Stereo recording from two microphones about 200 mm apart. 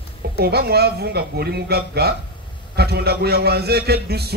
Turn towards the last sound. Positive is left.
turn(degrees=-50)  # may be behind; listen again after turning